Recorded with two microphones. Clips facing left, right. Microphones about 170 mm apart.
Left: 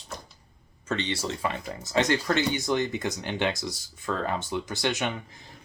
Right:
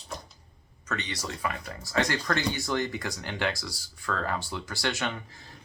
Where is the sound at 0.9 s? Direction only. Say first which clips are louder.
Left 5 dB; 30° left (ahead or behind).